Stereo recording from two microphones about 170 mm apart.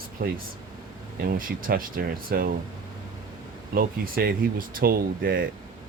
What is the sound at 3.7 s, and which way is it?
Speech, 60° right (ahead or behind).